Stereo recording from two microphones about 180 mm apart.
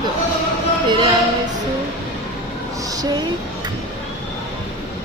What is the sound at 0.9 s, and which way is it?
Speech, 25° right (ahead or behind).